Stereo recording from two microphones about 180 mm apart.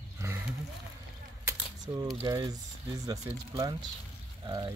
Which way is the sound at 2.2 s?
20° right (ahead or behind).